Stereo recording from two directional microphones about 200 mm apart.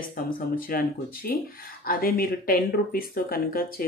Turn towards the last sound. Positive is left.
turn(degrees=45)  # may be behind; listen again after turning